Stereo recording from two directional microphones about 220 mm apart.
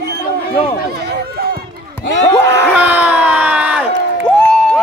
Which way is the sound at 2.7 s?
5° right (ahead or behind).